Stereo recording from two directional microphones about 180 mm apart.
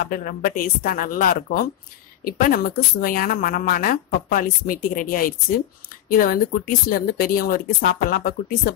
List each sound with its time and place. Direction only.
0.0 s a woman's voice: 50° left (ahead or behind)